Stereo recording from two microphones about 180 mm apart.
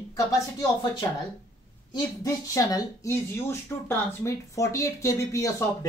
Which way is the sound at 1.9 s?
20° left (ahead or behind).